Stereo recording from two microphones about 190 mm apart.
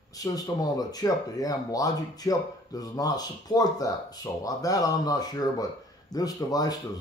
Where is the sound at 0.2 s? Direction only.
20° left (ahead or behind).